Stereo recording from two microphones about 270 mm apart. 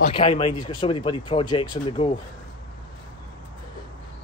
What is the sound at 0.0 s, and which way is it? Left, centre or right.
Speech, left.